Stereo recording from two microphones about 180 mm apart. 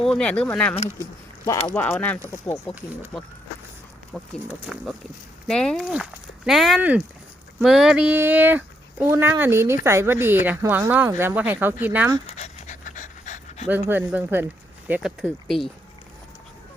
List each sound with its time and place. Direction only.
0.0 s speech: 5° left (ahead or behind)
4.4 s speech: 5° right (ahead or behind)
12.2 s pant: 40° left (ahead or behind)
13.7 s speech: 10° right (ahead or behind)